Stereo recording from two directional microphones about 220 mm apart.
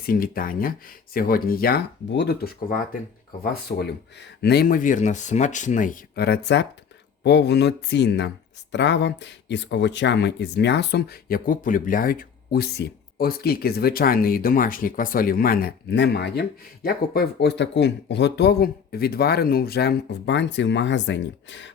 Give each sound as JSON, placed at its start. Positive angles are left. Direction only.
{"t": 0.0, "sound": "speech", "side_deg": 40}